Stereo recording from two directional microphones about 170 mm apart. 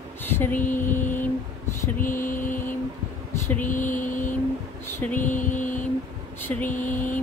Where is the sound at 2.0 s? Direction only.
55° left (ahead or behind).